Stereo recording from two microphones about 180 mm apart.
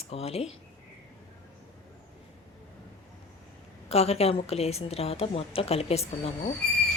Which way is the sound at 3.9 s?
35° left (ahead or behind).